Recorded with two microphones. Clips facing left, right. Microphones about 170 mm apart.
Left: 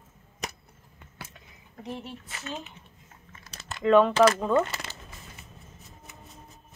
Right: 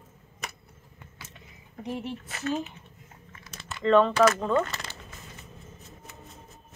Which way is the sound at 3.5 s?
40° left (ahead or behind).